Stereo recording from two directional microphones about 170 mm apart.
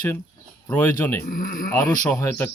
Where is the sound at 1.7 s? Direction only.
15° left (ahead or behind).